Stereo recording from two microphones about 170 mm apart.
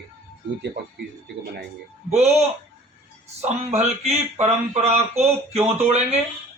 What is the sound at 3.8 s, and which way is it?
A man's voice, 40° right (ahead or behind).